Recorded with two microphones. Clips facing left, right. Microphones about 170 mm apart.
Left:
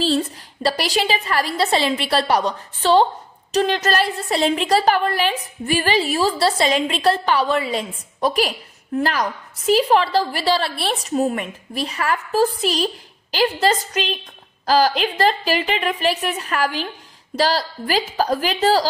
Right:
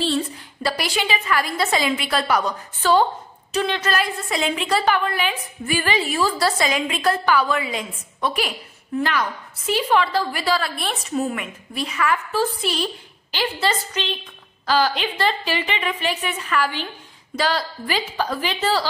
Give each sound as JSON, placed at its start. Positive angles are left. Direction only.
{"t": 0.0, "sound": "a woman's voice", "side_deg": 35}